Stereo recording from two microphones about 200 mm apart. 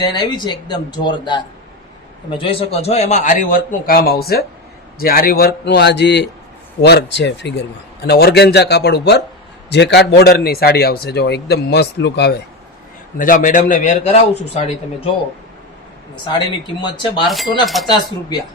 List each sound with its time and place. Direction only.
0.0 s speech: 20° left (ahead or behind)
2.4 s a man's voice: 30° left (ahead or behind); by 12.4 s 55° left (ahead or behind)
13.1 s a man's voice: 40° left (ahead or behind)
16.8 s speech: 25° left (ahead or behind)
17.2 s speech: centre (ahead or behind)
17.8 s speech: 20° left (ahead or behind)